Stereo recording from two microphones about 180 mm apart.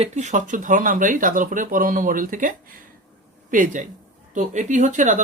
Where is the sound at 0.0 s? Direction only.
40° right (ahead or behind).